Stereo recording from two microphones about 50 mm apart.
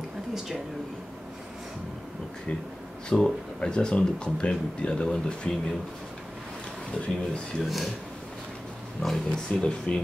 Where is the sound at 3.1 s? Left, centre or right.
Centre.